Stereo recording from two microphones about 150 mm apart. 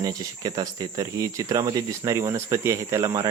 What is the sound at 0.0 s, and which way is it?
Speech, 25° right (ahead or behind).